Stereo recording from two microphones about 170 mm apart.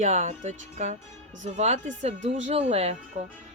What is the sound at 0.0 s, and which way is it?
Speech, 40° right (ahead or behind).